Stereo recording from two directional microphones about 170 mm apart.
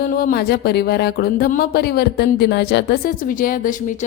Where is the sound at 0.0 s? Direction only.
60° left (ahead or behind).